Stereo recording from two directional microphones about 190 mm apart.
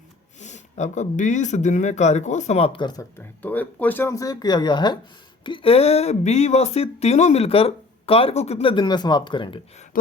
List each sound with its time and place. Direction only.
0.3 s speech: 40° left (ahead or behind)